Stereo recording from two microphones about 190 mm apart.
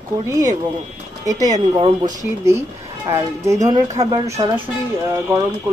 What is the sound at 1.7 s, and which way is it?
Speech, 20° right (ahead or behind).